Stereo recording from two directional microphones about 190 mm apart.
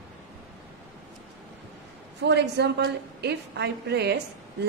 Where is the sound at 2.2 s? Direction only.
65° right (ahead or behind).